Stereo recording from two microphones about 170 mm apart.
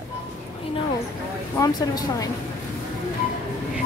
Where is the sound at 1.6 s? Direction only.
25° left (ahead or behind).